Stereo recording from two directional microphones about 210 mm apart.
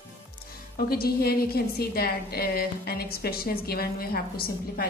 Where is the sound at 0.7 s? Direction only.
45° left (ahead or behind).